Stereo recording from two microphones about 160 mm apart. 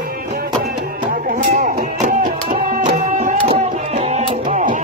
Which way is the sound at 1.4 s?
55° right (ahead or behind).